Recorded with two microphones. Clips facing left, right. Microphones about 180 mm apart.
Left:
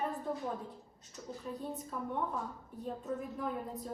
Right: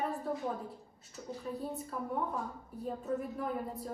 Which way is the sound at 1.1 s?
5° right (ahead or behind).